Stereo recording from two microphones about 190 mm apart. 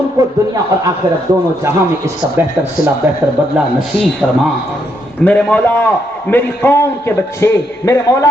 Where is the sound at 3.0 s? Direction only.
15° right (ahead or behind).